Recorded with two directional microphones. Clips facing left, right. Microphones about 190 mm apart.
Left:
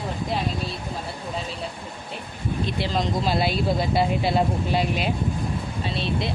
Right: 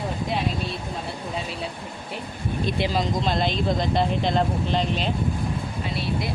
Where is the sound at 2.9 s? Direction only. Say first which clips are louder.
Even; centre (ahead or behind).